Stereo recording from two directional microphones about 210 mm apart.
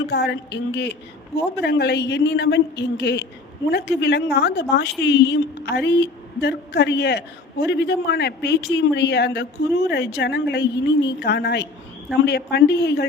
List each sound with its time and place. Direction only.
0.1 s a woman's voice: 55° left (ahead or behind)